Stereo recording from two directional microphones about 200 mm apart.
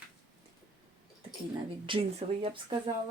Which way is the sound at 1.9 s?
25° right (ahead or behind).